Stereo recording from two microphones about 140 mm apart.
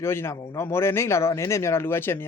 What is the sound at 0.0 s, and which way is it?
Speech, 15° left (ahead or behind).